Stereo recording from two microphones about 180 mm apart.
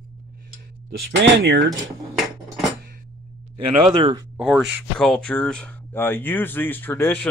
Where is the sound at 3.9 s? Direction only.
25° right (ahead or behind).